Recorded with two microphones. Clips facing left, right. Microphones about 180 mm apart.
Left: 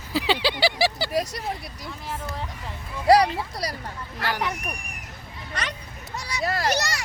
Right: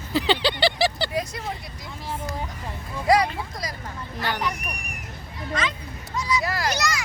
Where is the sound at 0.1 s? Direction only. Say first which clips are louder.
Right 1 dB; 5° left (ahead or behind).